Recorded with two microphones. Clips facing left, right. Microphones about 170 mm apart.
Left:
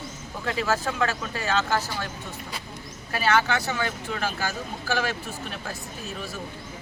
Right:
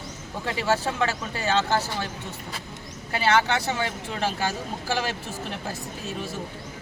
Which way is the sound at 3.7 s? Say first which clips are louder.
Even; 25° right (ahead or behind).